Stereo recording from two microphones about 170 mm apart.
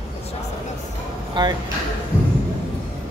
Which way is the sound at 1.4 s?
25° right (ahead or behind).